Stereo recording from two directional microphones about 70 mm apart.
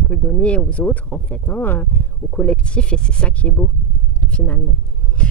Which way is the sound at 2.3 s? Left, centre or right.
Centre.